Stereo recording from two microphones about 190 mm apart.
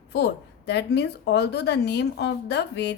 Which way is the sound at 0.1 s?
60° left (ahead or behind).